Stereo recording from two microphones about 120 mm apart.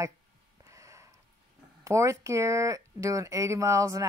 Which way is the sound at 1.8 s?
25° right (ahead or behind).